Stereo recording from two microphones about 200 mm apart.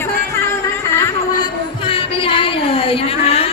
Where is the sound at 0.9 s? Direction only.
20° left (ahead or behind).